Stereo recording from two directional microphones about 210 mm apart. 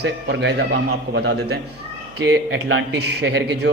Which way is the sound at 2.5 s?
60° right (ahead or behind).